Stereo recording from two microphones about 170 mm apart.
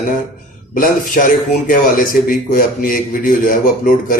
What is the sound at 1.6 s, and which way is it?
Mantra, 55° left (ahead or behind).